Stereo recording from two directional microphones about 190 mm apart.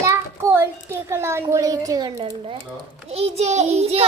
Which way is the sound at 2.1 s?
30° right (ahead or behind).